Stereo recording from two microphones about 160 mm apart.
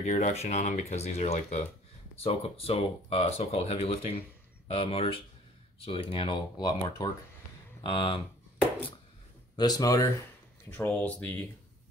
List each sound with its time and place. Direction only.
0.0 s speech: 45° left (ahead or behind)
9.6 s speech: 25° left (ahead or behind)
10.7 s speech: 10° left (ahead or behind)